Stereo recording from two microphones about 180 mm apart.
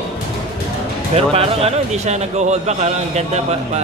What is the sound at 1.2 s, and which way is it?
A man's voice, 35° right (ahead or behind).